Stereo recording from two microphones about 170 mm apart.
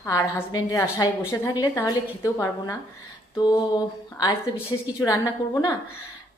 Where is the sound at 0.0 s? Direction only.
15° left (ahead or behind).